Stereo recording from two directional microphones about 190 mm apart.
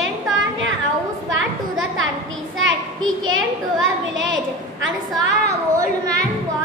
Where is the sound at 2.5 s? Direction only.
90° right.